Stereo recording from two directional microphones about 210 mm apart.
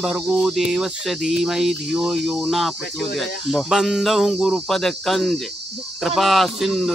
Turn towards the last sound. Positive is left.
turn(degrees=0)  # may be behind; listen again after turning